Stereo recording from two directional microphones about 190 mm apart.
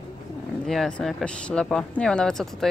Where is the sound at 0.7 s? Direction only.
5° left (ahead or behind).